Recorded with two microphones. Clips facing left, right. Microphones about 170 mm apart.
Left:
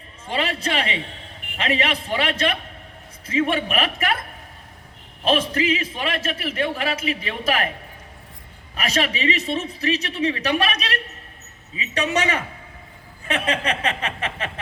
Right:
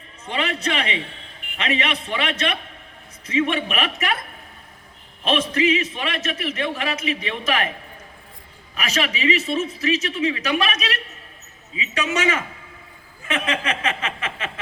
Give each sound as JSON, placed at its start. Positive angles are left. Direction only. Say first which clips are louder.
{"t": 0.3, "sound": "a man's voice", "louder": "even", "side_deg": 35}
{"t": 3.2, "sound": "a man's voice", "louder": "even", "side_deg": 35}
{"t": 5.2, "sound": "a man's voice", "louder": "even", "side_deg": 35}
{"t": 8.7, "sound": "a man's voice", "louder": "left 1 dB", "side_deg": 35}